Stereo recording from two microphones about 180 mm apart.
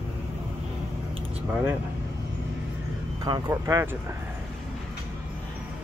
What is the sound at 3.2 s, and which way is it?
Speech, 20° right (ahead or behind).